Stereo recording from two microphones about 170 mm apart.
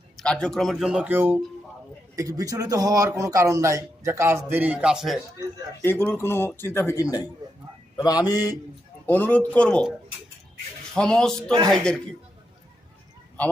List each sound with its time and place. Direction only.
0.2 s a man's voice: 5° left (ahead or behind)
5.8 s a man's voice: 10° left (ahead or behind)
9.0 s speech: 10° left (ahead or behind)
10.9 s speech: 5° left (ahead or behind)